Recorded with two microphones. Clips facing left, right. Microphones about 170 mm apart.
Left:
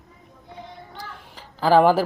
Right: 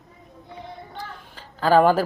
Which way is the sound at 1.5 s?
10° left (ahead or behind).